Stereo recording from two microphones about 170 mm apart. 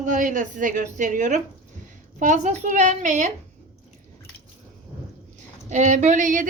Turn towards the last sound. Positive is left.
turn(degrees=-50)  # may be behind; listen again after turning